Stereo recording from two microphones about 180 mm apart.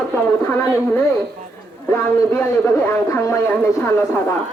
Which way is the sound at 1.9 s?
15° left (ahead or behind).